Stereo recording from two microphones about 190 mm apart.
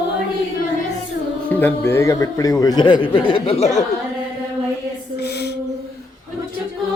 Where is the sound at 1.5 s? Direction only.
10° left (ahead or behind); by 3.7 s 30° left (ahead or behind).